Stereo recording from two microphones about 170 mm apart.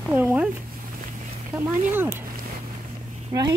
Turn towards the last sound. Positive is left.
turn(degrees=-20)  # may be behind; listen again after turning